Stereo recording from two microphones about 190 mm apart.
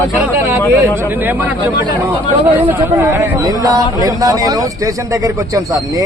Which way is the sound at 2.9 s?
15° right (ahead or behind).